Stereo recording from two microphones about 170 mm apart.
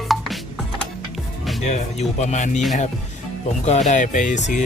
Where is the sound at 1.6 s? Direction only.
40° left (ahead or behind).